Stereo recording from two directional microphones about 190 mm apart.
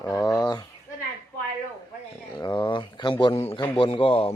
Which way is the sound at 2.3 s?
25° left (ahead or behind).